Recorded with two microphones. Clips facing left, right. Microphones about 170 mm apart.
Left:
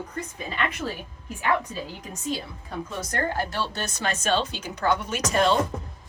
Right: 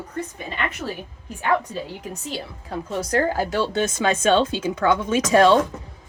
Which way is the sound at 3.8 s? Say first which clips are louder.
Right 8 dB; 90° right.